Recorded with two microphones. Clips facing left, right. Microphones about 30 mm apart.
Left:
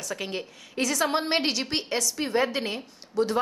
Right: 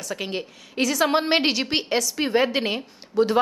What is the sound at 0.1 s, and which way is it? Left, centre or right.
A woman's voice, centre.